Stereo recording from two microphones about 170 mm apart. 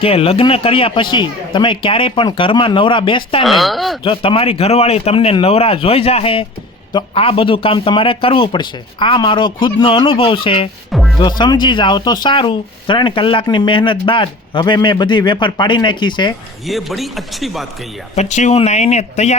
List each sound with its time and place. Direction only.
0.0 s a man's voice: 35° left (ahead or behind)
3.4 s a man's voice: centre (ahead or behind)
4.0 s a man's voice: 30° left (ahead or behind)
10.9 s music: centre (ahead or behind)
11.2 s speech: 25° left (ahead or behind)
16.6 s a man's voice: centre (ahead or behind)
18.1 s a man's voice: 40° left (ahead or behind)